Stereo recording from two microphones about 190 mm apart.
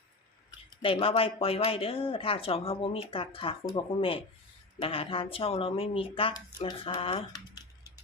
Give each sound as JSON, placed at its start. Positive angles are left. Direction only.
{"t": 0.8, "sound": "speech", "side_deg": 30}